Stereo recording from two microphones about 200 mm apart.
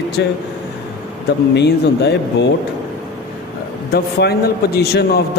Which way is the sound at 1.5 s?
60° left (ahead or behind).